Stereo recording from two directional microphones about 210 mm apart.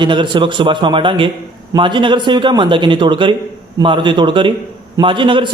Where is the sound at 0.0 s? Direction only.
20° right (ahead or behind).